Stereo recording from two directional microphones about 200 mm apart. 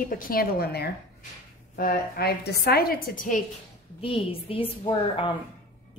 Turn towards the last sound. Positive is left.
turn(degrees=25)  # may be behind; listen again after turning